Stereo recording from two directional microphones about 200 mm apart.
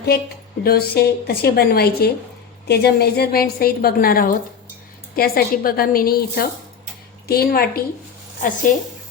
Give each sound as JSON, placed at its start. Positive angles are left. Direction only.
{"t": 0.6, "sound": "a woman's voice", "side_deg": 50}